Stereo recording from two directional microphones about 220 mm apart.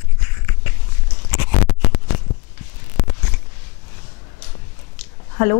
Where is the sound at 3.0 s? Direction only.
10° left (ahead or behind).